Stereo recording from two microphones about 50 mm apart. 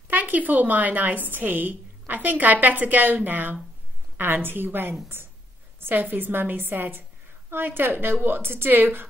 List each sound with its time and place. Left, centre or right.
0.1 s a woman's voice: right